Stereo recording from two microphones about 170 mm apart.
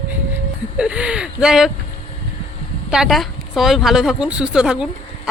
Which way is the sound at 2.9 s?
Centre (ahead or behind).